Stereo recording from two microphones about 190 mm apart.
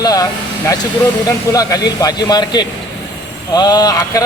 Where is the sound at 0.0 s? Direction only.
20° left (ahead or behind).